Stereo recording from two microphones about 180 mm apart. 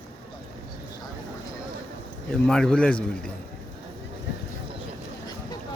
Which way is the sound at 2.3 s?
5° left (ahead or behind).